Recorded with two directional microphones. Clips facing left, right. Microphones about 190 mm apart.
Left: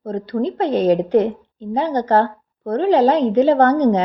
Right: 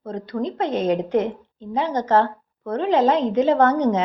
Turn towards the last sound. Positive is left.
turn(degrees=35)  # may be behind; listen again after turning